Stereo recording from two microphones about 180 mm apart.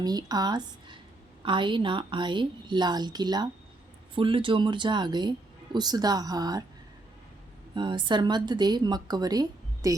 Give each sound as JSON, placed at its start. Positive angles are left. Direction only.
{"t": 0.0, "sound": "speech", "side_deg": -20}
{"t": 7.8, "sound": "speech", "side_deg": -25}